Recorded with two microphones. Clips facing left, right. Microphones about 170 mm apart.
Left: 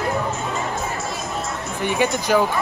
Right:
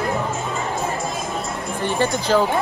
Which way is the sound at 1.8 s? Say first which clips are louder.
Even; 15° left (ahead or behind).